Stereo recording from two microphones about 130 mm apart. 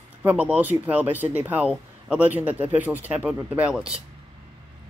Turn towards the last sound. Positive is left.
turn(degrees=-5)  # may be behind; listen again after turning